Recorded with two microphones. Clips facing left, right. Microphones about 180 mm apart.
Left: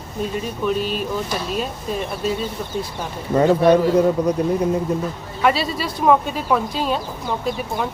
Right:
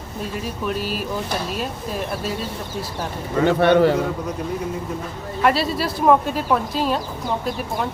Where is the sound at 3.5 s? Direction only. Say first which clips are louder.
Right 1 dB; 70° right (ahead or behind).